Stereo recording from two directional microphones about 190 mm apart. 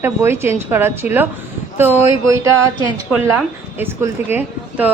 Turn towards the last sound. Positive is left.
turn(degrees=-10)  # may be behind; listen again after turning